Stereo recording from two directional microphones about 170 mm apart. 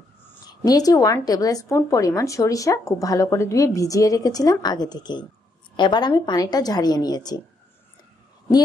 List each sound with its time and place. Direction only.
0.5 s a woman's voice: 20° left (ahead or behind)